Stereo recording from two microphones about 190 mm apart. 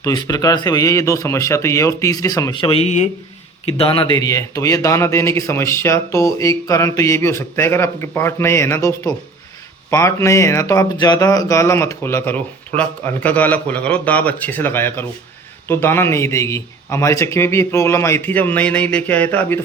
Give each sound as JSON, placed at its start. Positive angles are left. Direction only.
{"t": 0.0, "sound": "a man's voice", "side_deg": 20}